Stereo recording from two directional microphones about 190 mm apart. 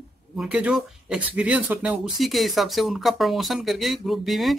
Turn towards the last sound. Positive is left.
turn(degrees=0)  # may be behind; listen again after turning